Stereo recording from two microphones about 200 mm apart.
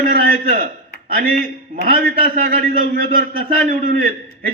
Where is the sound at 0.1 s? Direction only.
45° right (ahead or behind).